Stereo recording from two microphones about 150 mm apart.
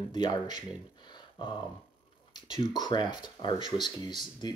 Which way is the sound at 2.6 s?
30° left (ahead or behind).